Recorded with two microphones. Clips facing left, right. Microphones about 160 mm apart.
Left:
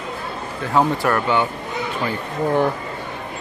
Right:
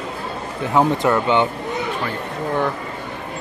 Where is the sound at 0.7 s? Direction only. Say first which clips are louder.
Right 2 dB; 15° right (ahead or behind).